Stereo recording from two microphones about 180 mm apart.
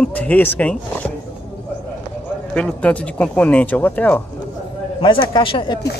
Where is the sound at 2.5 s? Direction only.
5° left (ahead or behind).